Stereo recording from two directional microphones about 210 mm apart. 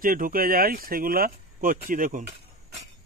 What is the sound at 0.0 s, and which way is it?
Speech, 40° right (ahead or behind).